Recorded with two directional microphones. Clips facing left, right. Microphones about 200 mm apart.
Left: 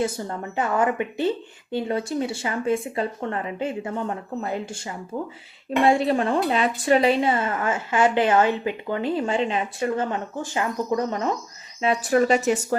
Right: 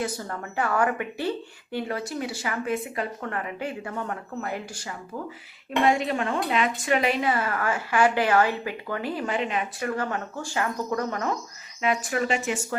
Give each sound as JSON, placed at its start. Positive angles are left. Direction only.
{"t": 0.0, "sound": "speech", "side_deg": 25}
{"t": 11.8, "sound": "speech", "side_deg": 35}